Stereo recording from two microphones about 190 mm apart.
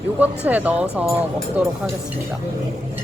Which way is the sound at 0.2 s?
10° right (ahead or behind).